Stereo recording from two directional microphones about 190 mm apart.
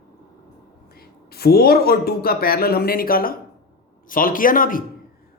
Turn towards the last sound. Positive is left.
turn(degrees=45)  # may be behind; listen again after turning